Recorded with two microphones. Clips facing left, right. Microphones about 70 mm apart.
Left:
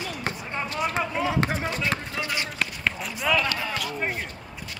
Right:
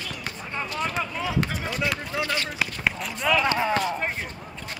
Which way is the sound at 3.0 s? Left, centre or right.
Centre.